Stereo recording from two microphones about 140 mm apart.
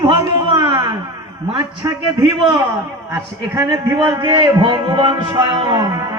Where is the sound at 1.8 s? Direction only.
25° right (ahead or behind).